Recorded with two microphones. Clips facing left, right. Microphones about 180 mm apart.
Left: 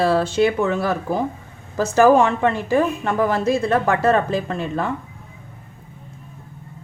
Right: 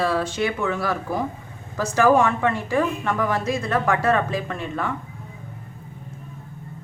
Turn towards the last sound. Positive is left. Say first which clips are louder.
# left 4 dB
turn(degrees=30)  # may be behind; listen again after turning